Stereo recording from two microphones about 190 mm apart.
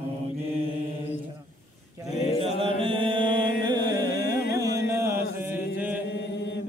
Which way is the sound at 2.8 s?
30° right (ahead or behind).